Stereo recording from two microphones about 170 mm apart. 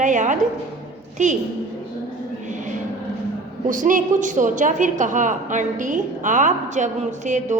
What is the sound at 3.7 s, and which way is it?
A woman's voice, 50° right (ahead or behind).